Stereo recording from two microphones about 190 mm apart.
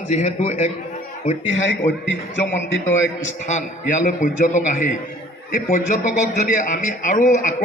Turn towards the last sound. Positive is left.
turn(degrees=40)  # may be behind; listen again after turning